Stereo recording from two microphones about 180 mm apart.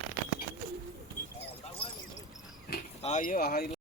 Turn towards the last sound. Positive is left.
turn(degrees=55)  # may be behind; listen again after turning